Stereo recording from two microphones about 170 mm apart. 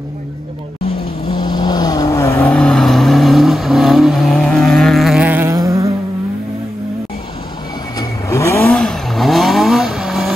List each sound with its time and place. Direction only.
1.3 s vehicle: 25° left (ahead or behind)
2.4 s vehicle: 5° left (ahead or behind); by 5.9 s 20° right (ahead or behind)
8.0 s vehicle: 15° left (ahead or behind); by 10.3 s centre (ahead or behind)